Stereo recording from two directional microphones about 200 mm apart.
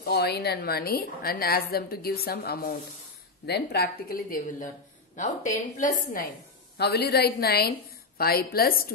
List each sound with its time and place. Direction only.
0.0 s a woman's voice: 55° left (ahead or behind)
6.8 s a woman's voice: 55° left (ahead or behind)